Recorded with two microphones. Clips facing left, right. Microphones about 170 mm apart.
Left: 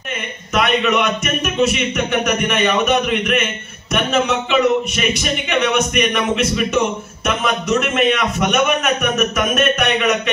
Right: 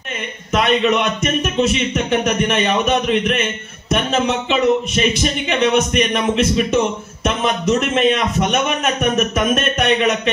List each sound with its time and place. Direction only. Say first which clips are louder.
0.5 s a man's voice: right 1 dB; 30° right (ahead or behind)